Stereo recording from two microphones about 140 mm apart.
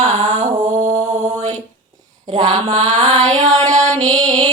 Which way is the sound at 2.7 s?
60° right (ahead or behind).